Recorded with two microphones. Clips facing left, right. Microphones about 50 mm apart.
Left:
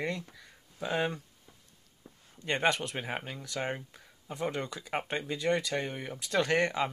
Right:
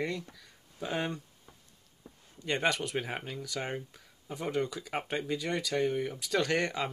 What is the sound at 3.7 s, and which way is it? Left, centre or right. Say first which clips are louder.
Speech: left 1 dB; centre.